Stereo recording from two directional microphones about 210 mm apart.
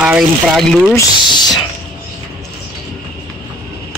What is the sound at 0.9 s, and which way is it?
Speech, 20° left (ahead or behind).